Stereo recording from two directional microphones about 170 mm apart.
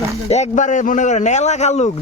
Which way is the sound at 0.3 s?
45° left (ahead or behind).